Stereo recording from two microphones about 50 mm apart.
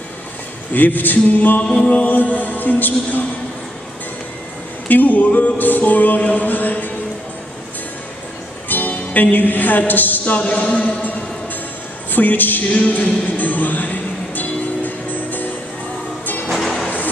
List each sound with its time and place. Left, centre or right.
0.7 s music: left
1.6 s mantra: centre
1.9 s music: left
4.8 s music: left
8.6 s a woman's voice: left
12.1 s music: left
16.4 s music: centre